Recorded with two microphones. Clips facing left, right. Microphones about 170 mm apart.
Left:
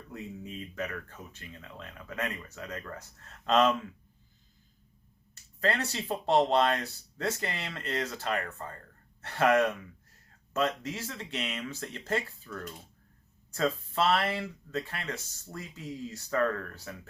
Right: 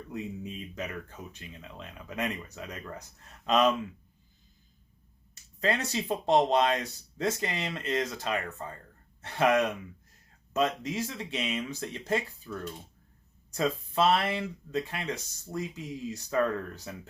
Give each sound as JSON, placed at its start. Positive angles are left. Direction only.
{"t": 0.1, "sound": "speech", "side_deg": -15}
{"t": 5.3, "sound": "speech", "side_deg": -15}